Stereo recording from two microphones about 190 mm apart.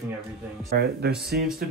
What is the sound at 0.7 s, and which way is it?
Speech, 60° right (ahead or behind).